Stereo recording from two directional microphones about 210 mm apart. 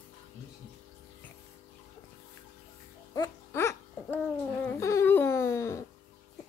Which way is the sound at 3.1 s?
15° left (ahead or behind).